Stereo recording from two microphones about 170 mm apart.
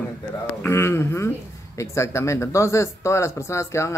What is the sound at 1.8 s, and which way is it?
Speech, 15° left (ahead or behind).